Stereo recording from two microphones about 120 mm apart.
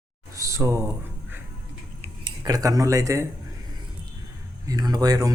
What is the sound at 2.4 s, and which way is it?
Speech, 30° right (ahead or behind).